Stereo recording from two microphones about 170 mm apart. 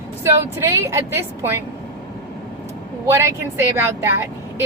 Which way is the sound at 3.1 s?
15° right (ahead or behind).